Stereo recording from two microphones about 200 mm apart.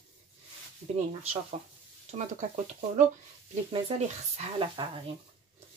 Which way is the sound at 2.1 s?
35° right (ahead or behind).